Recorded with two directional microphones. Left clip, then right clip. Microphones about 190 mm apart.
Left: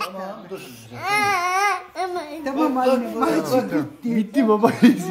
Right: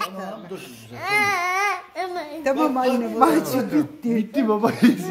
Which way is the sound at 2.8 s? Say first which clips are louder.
Right 1 dB; 50° right (ahead or behind).